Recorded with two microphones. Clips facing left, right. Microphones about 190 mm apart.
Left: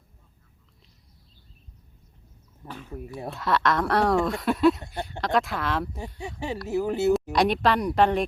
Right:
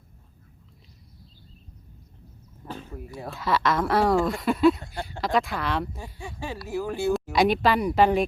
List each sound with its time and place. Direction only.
3.2 s speech: centre (ahead or behind)
6.1 s speech: 20° left (ahead or behind)
7.3 s speech: centre (ahead or behind)